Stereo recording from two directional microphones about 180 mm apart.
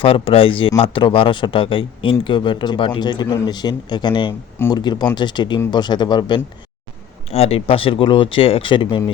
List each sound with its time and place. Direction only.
0.0 s speech: 30° left (ahead or behind)
4.5 s speech: 15° left (ahead or behind)
4.8 s speech: 25° left (ahead or behind)
7.3 s speech: 35° left (ahead or behind)